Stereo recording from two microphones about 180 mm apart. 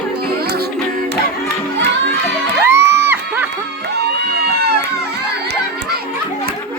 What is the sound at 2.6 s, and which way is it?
Crowd, 10° right (ahead or behind).